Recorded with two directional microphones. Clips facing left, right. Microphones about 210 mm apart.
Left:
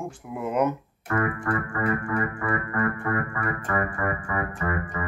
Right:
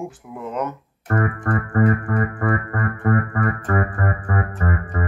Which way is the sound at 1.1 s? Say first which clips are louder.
Right 3 dB; 40° right (ahead or behind).